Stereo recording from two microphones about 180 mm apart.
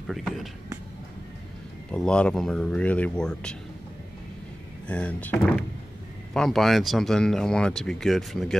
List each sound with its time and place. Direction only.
0.0 s speech: centre (ahead or behind)
1.9 s speech: 5° left (ahead or behind)
4.8 s speech: 5° left (ahead or behind)